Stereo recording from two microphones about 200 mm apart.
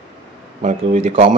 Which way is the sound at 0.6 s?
35° right (ahead or behind).